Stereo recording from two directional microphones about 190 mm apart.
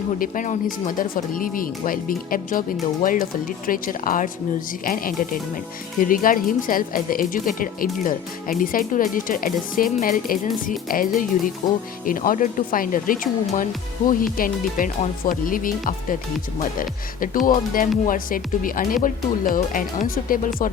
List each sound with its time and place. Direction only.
0.2 s speech: 45° left (ahead or behind)